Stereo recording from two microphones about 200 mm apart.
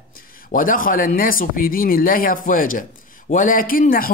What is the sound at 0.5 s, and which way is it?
A woman's voice, 45° left (ahead or behind).